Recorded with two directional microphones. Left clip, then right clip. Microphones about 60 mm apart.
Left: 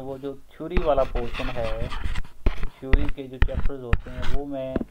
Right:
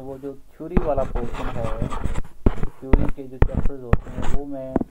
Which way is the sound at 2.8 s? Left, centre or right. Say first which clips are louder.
Right 5 dB; left.